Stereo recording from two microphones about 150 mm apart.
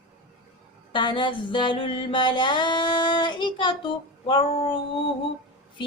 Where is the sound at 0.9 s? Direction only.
30° left (ahead or behind).